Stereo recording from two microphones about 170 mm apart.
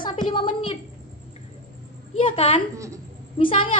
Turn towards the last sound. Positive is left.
turn(degrees=30)  # may be behind; listen again after turning